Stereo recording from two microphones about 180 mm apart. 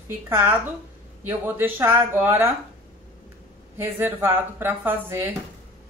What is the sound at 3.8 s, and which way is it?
Speech, 10° right (ahead or behind).